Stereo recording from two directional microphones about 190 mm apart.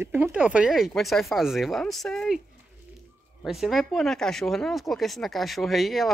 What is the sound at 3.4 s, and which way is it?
Speech, centre (ahead or behind).